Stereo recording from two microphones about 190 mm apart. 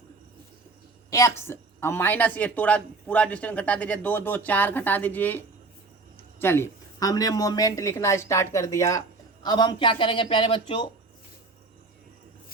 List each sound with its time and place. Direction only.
1.1 s a woman's voice: 15° left (ahead or behind)
6.4 s speech: 10° left (ahead or behind)